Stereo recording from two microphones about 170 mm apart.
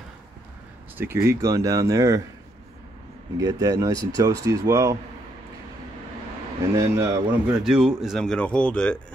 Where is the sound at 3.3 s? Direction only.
20° right (ahead or behind).